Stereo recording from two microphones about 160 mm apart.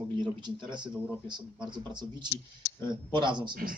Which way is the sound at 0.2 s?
30° right (ahead or behind).